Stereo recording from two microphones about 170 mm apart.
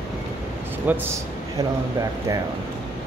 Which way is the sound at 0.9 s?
10° right (ahead or behind).